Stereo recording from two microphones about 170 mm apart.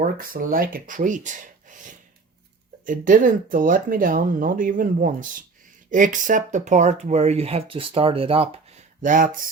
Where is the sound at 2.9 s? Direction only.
50° right (ahead or behind); by 8.5 s 35° right (ahead or behind).